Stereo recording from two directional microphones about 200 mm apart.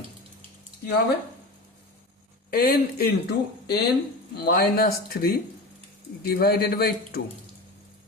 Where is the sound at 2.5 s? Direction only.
50° left (ahead or behind).